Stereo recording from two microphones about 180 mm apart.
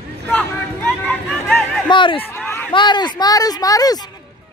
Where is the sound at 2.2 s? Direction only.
10° left (ahead or behind).